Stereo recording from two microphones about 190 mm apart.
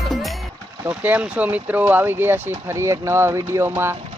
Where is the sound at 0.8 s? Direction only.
10° right (ahead or behind).